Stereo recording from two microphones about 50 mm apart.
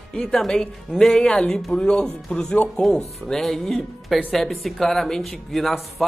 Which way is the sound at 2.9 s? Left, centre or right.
Centre.